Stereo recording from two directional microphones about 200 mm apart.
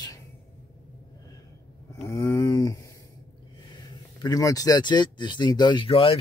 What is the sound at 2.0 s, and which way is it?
Speech, 15° left (ahead or behind).